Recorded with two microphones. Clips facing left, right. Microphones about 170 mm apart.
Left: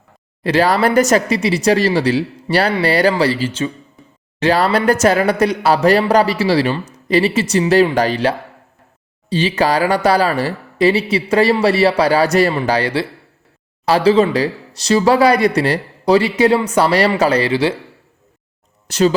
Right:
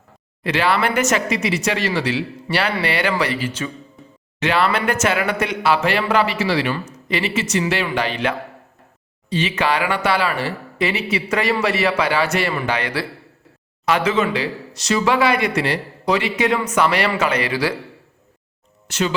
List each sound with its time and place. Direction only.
0.4 s a man's voice: 40° left (ahead or behind)
18.9 s speech: 35° left (ahead or behind)